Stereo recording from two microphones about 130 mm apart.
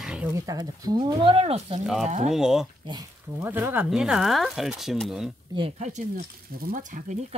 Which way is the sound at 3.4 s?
15° right (ahead or behind).